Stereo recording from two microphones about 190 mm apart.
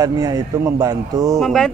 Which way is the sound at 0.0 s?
20° right (ahead or behind).